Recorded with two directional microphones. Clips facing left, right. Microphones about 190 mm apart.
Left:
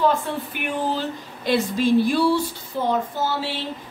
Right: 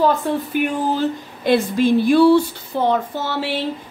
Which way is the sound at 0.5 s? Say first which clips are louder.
Right 4 dB; 50° right (ahead or behind).